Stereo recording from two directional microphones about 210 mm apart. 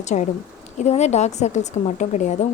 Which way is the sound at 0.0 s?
35° left (ahead or behind).